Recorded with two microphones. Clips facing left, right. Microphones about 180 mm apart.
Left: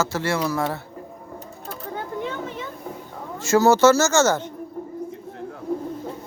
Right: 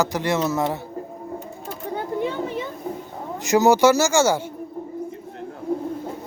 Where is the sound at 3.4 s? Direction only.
15° right (ahead or behind).